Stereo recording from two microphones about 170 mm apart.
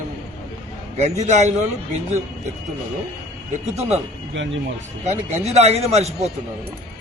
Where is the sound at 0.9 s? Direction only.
40° right (ahead or behind).